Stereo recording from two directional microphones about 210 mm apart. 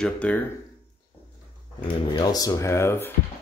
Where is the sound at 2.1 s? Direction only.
20° left (ahead or behind).